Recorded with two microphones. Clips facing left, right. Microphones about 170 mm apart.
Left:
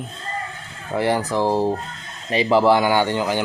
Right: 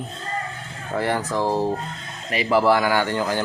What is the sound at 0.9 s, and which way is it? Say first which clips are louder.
Speech: left 3 dB; 25° left (ahead or behind).